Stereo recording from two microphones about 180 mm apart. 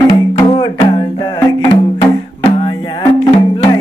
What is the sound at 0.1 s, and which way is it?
Music, 25° left (ahead or behind).